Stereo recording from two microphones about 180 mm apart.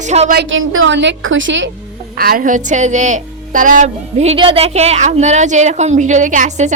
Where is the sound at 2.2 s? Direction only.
55° right (ahead or behind).